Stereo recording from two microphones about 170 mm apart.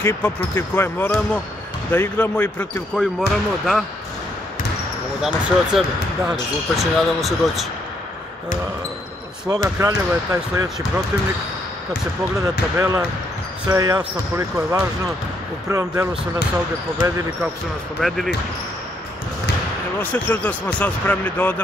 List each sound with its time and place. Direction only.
0.0 s speech: 15° left (ahead or behind)
5.2 s speech: 5° right (ahead or behind)
9.5 s speech: 20° right (ahead or behind)
12.4 s speech: 20° right (ahead or behind)
18.0 s speech: centre (ahead or behind)
20.0 s speech: 10° left (ahead or behind)